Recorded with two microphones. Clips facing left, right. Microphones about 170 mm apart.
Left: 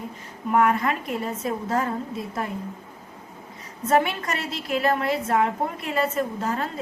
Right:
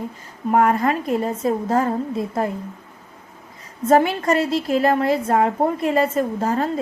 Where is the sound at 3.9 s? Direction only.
35° right (ahead or behind).